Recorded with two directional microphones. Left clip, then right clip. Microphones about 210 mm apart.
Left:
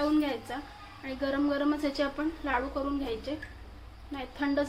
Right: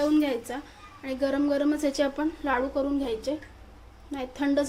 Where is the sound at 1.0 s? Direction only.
45° right (ahead or behind).